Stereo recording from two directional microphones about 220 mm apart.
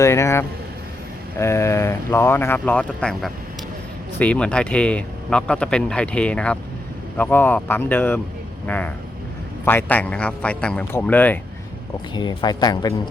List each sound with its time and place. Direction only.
0.0 s speech: 15° left (ahead or behind)
12.1 s speech: 20° left (ahead or behind)